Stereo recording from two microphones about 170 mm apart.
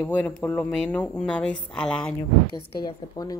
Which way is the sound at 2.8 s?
25° left (ahead or behind).